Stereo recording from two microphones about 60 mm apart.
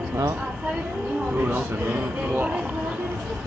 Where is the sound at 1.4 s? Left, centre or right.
Right.